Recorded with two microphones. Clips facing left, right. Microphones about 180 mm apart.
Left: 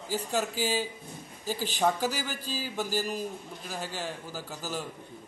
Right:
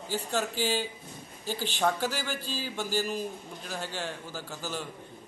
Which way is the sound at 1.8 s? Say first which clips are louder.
Left 1 dB; 10° left (ahead or behind).